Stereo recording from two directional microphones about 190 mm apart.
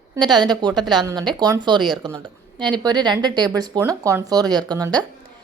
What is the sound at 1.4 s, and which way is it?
Speech, 25° right (ahead or behind).